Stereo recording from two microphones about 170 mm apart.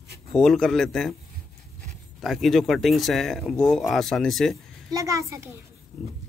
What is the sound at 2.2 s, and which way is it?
Speech, centre (ahead or behind).